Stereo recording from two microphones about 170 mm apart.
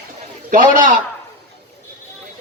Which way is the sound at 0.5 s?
50° right (ahead or behind).